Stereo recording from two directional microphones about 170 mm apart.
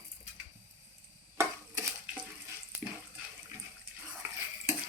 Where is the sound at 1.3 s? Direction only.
15° right (ahead or behind).